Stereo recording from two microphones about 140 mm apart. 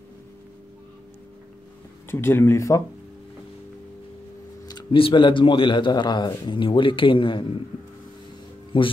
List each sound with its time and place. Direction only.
2.0 s speech: 15° left (ahead or behind)
4.6 s speech: 35° left (ahead or behind)
8.7 s speech: 35° left (ahead or behind)